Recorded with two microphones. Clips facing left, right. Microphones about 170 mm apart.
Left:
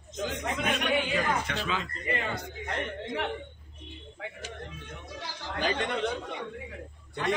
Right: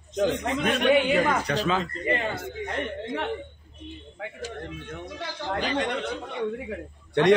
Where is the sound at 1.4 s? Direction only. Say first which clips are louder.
Right 7 dB; 40° right (ahead or behind).